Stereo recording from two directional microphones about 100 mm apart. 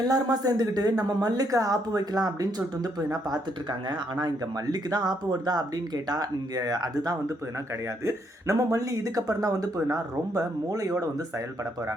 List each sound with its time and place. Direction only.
0.0 s speech: 40° right (ahead or behind)